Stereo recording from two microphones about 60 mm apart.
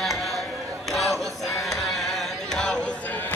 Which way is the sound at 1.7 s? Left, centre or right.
Centre.